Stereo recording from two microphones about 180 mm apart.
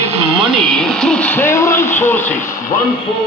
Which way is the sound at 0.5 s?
Centre (ahead or behind).